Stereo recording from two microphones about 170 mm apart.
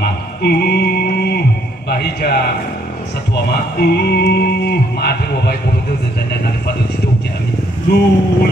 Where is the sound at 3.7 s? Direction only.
70° left (ahead or behind).